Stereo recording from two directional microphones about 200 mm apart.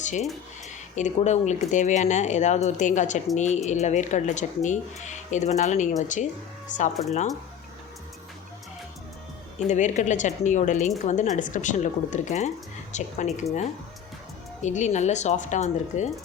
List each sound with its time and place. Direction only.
0.0 s a woman's voice: 35° left (ahead or behind)
9.6 s a woman's voice: 35° left (ahead or behind)
14.6 s a woman's voice: 35° left (ahead or behind)